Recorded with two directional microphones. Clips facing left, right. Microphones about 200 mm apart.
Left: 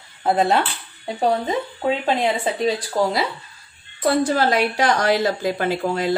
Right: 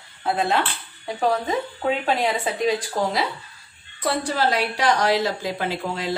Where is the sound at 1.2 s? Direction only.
25° left (ahead or behind).